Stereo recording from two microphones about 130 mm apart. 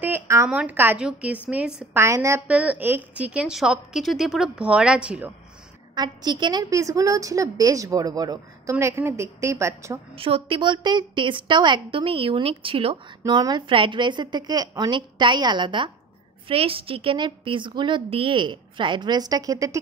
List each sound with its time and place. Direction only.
0.0 s a sound: 20° right (ahead or behind)
0.5 s a woman's voice: 10° right (ahead or behind)
2.0 s a woman's voice: 20° right (ahead or behind)
2.4 s a woman's voice: 10° right (ahead or behind)
5.9 s a woman's voice: 35° right (ahead or behind)
10.1 s a woman's voice: 45° right (ahead or behind)
13.3 s a woman's voice: 35° right (ahead or behind)